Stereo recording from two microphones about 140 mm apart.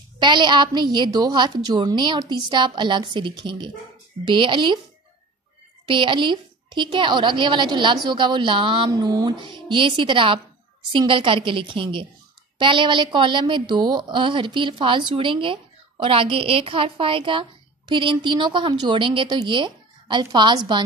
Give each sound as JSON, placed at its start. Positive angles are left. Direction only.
{"t": 0.2, "sound": "a woman's voice", "side_deg": -30}
{"t": 5.9, "sound": "a woman's voice", "side_deg": -35}